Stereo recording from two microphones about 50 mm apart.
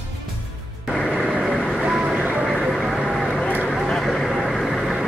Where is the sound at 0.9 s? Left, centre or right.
Left.